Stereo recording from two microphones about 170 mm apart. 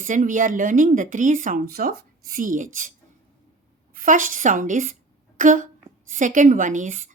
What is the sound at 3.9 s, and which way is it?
Speech, 50° right (ahead or behind).